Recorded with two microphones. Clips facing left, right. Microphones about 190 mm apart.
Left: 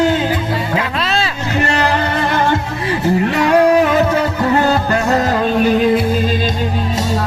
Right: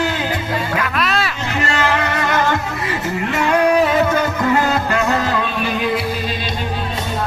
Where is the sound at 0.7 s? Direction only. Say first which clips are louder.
Left 1 dB; 25° left (ahead or behind).